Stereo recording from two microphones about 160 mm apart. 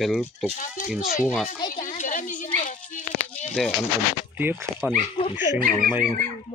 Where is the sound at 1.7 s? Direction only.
50° left (ahead or behind).